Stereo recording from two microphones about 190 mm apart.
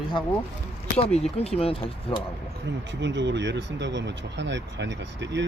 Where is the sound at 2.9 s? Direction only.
70° right (ahead or behind).